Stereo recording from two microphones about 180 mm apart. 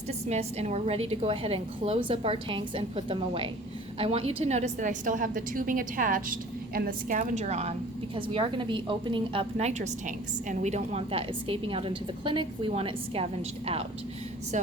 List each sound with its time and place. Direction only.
0.3 s a woman's voice: 35° right (ahead or behind)